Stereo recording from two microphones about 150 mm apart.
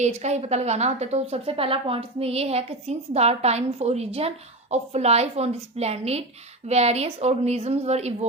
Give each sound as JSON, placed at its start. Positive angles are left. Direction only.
{"t": 0.0, "sound": "a woman's voice", "side_deg": -50}